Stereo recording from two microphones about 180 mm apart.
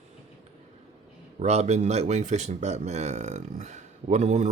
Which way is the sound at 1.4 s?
40° right (ahead or behind).